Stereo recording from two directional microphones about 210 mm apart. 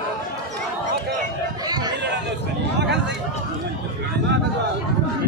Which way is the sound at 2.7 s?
55° right (ahead or behind).